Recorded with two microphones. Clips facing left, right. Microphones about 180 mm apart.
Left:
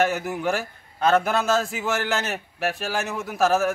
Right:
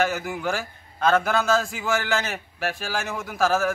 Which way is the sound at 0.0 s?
Centre (ahead or behind).